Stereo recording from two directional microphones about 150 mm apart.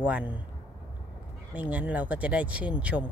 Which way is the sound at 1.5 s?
10° right (ahead or behind).